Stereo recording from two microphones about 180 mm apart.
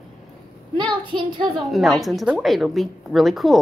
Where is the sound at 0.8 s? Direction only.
25° right (ahead or behind).